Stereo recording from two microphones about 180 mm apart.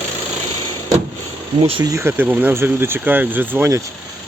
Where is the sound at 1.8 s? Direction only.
15° right (ahead or behind).